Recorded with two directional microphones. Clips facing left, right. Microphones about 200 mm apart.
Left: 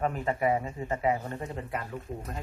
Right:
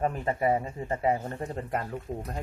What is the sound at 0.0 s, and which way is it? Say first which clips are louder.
Speech: right 1 dB; 35° right (ahead or behind).